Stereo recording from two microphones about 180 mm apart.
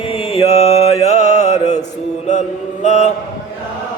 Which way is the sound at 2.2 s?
40° left (ahead or behind).